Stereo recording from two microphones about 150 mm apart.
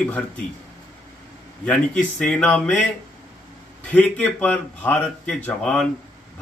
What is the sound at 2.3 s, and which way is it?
Speech, 10° left (ahead or behind).